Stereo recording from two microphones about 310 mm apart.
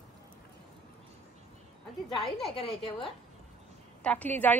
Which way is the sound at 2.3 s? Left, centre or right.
Centre.